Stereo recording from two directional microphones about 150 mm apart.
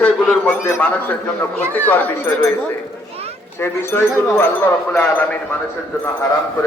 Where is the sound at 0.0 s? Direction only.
10° left (ahead or behind).